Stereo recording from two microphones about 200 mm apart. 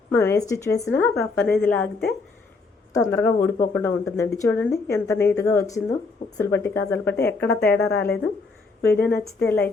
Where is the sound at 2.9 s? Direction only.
15° left (ahead or behind).